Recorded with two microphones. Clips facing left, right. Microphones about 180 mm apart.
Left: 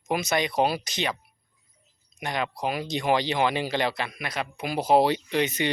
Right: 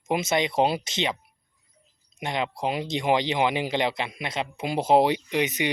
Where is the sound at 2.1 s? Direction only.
25° right (ahead or behind).